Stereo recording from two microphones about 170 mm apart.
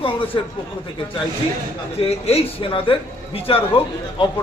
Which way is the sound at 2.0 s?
35° left (ahead or behind).